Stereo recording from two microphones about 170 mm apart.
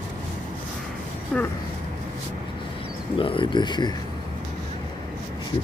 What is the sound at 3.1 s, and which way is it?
Speech, 30° left (ahead or behind).